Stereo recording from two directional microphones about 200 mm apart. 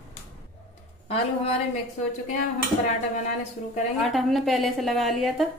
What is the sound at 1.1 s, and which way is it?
A woman's voice, 30° left (ahead or behind).